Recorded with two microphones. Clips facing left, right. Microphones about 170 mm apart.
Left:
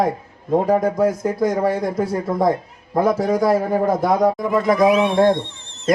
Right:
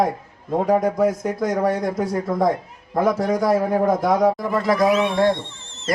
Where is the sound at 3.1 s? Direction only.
5° left (ahead or behind).